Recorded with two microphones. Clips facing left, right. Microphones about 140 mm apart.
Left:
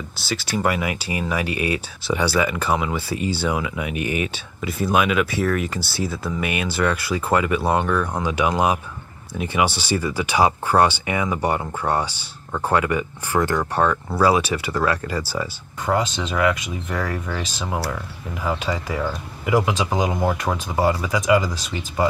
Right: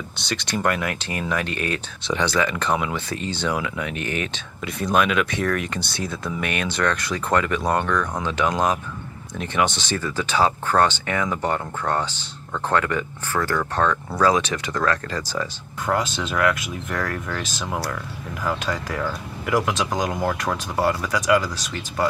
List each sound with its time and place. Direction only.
0.2 s speech: 5° left (ahead or behind)